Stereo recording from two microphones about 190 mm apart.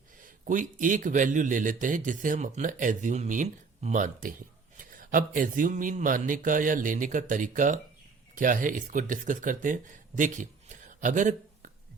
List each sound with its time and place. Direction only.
0.2 s speech: 45° right (ahead or behind)